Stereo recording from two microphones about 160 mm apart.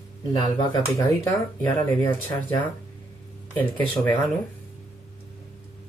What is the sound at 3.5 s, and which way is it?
Speech, 10° left (ahead or behind).